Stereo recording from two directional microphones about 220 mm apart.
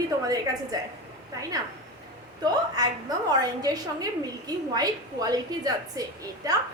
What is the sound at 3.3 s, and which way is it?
A woman's voice, 20° right (ahead or behind).